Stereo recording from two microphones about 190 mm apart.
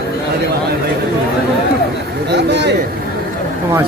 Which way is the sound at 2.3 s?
65° right (ahead or behind).